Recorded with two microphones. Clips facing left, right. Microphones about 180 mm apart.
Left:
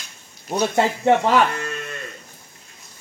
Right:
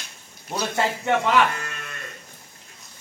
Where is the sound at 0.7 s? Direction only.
35° left (ahead or behind).